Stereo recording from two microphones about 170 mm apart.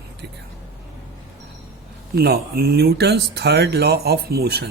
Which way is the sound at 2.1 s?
70° right (ahead or behind).